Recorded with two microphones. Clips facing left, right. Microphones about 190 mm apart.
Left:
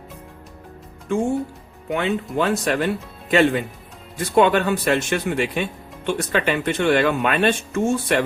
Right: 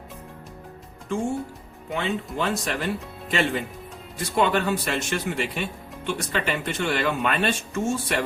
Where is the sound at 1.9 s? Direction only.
60° left (ahead or behind).